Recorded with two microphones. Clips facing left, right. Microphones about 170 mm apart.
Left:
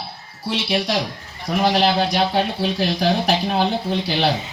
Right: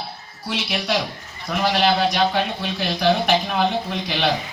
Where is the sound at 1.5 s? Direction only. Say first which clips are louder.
Left 2 dB; 35° left (ahead or behind).